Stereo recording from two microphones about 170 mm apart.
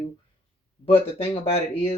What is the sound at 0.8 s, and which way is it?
Speech, 35° left (ahead or behind).